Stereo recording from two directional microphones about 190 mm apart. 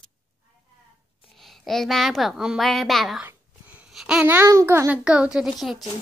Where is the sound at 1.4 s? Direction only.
Centre (ahead or behind).